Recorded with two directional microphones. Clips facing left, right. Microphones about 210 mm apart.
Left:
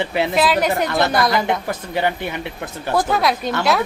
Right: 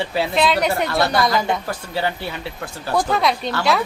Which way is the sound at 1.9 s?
15° left (ahead or behind).